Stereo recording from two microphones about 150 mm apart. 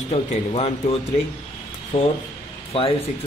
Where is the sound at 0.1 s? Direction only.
45° left (ahead or behind).